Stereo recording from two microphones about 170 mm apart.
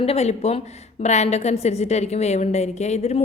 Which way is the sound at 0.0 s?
40° left (ahead or behind).